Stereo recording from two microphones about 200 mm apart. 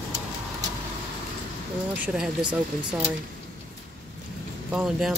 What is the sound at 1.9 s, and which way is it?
Speech, 5° right (ahead or behind).